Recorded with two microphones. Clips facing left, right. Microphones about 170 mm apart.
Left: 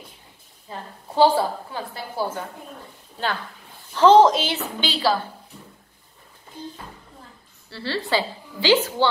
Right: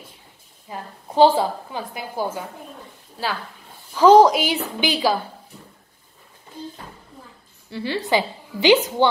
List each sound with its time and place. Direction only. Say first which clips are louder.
0.7 s a woman's voice: right 2 dB; 20° right (ahead or behind)
3.9 s a woman's voice: right 2 dB; 10° right (ahead or behind)
7.7 s a woman's voice: right 3 dB; 15° right (ahead or behind)